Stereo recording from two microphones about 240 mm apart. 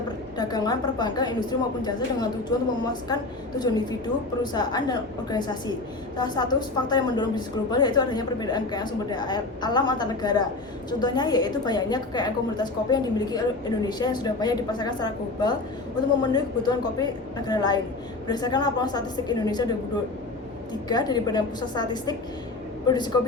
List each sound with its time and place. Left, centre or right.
0.3 s a woman's voice: centre
4.5 s a woman's voice: centre
20.8 s a woman's voice: centre